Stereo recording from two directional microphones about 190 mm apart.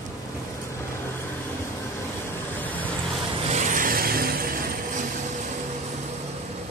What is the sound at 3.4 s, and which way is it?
Vehicle, 40° right (ahead or behind).